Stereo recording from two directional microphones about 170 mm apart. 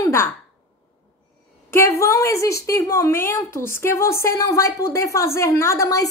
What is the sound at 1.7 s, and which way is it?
A woman's voice, 15° left (ahead or behind).